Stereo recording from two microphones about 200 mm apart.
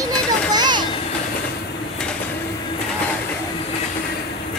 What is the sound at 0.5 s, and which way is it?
Children playing, 20° right (ahead or behind).